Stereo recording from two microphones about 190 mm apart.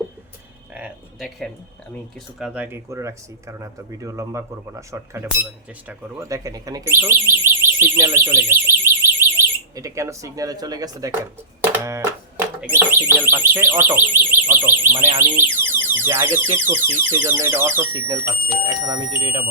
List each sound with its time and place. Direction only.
0.7 s a sound: 5° right (ahead or behind)
2.4 s speech: 10° right (ahead or behind)
11.7 s a sound: 15° right (ahead or behind)
12.7 s speech: 10° right (ahead or behind)
15.4 s alarm: 10° right (ahead or behind)
16.1 s speech: 15° right (ahead or behind)